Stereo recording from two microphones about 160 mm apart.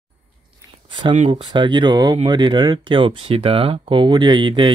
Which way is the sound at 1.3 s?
30° right (ahead or behind).